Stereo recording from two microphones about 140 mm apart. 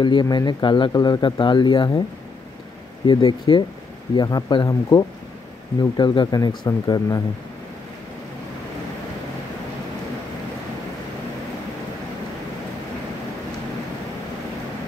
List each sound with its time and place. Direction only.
0.0 s speech: 30° left (ahead or behind)
3.1 s speech: 35° left (ahead or behind)